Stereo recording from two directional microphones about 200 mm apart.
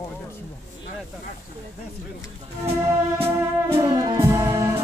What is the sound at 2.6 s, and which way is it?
Speech, 25° right (ahead or behind).